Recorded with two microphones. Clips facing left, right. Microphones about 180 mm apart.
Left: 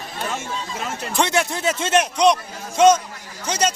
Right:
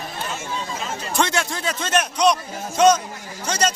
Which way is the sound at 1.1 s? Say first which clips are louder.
Left 2 dB; 20° left (ahead or behind).